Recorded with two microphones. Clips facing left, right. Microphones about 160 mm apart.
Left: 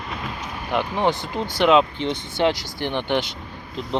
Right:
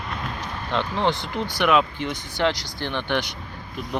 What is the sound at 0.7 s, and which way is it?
Speech, 15° left (ahead or behind).